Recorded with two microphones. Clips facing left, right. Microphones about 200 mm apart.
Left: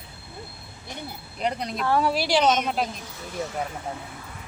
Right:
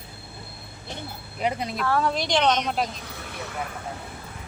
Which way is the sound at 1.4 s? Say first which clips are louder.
Right 1 dB; 5° right (ahead or behind).